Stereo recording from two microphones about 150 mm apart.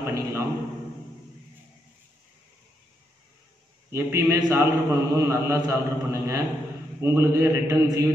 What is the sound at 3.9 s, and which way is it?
A man's voice, 20° right (ahead or behind).